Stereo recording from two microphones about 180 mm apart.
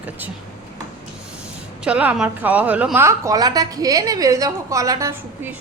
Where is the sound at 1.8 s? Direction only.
5° right (ahead or behind).